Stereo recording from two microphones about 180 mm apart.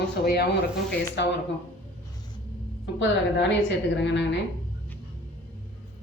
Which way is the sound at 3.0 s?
75° left (ahead or behind).